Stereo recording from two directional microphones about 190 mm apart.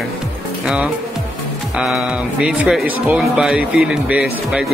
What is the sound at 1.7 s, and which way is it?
A man's voice, 5° right (ahead or behind).